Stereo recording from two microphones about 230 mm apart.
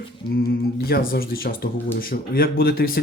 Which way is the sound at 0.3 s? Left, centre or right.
Left.